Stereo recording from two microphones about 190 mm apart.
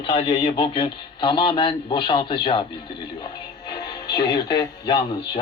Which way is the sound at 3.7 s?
25° left (ahead or behind).